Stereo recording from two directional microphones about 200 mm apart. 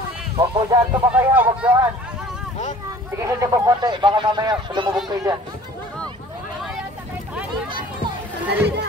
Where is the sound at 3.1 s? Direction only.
15° right (ahead or behind).